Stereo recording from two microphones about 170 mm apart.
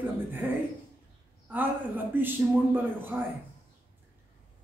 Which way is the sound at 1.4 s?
10° right (ahead or behind).